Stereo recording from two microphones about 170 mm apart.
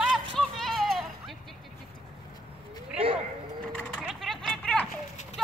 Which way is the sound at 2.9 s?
30° right (ahead or behind).